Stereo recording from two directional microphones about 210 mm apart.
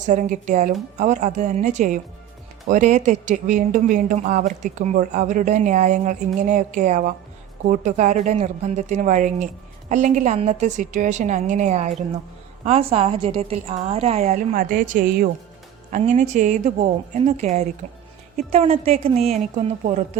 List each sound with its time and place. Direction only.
0.0 s a woman's voice: 40° right (ahead or behind)